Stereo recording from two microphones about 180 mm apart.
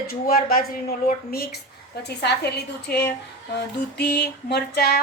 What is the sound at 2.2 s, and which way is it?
A woman's voice, 65° left (ahead or behind).